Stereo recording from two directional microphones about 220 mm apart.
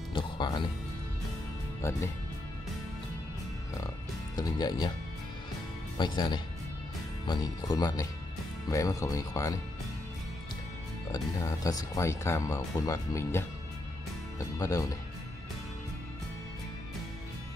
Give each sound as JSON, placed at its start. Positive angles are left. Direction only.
{"t": 0.1, "sound": "music", "side_deg": 20}
{"t": 1.8, "sound": "speech", "side_deg": 10}
{"t": 4.4, "sound": "speech", "side_deg": 20}
{"t": 5.9, "sound": "speech", "side_deg": 20}
{"t": 11.6, "sound": "speech", "side_deg": 15}
{"t": 14.6, "sound": "speech", "side_deg": 15}